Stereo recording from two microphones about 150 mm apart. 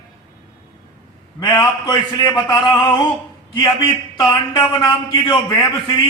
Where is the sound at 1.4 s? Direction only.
25° left (ahead or behind).